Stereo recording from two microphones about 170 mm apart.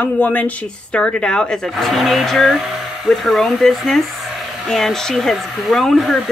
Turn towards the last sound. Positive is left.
turn(degrees=0)  # may be behind; listen again after turning